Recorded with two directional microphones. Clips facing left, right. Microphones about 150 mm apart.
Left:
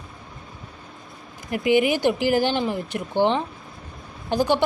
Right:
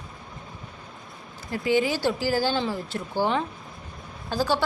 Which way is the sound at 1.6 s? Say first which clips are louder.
Left 4 dB; 20° left (ahead or behind).